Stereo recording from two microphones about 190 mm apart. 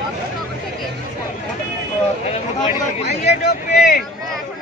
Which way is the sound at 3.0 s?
35° left (ahead or behind).